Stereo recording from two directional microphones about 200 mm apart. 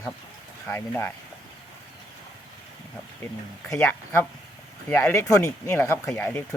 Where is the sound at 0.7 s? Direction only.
10° left (ahead or behind).